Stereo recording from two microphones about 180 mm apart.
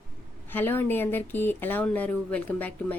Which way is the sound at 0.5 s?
10° left (ahead or behind).